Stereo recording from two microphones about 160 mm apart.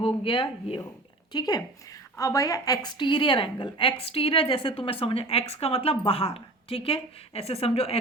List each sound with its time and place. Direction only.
0.0 s a woman's voice: 30° left (ahead or behind)